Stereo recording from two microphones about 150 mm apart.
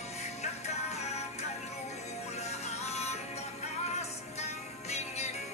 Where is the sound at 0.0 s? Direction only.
45° left (ahead or behind).